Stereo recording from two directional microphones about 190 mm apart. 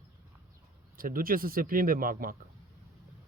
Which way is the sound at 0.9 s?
45° right (ahead or behind).